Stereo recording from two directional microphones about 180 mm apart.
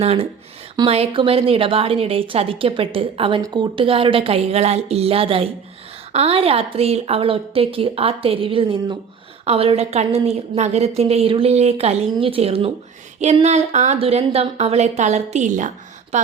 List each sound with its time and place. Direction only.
0.0 s a woman's voice: 35° right (ahead or behind)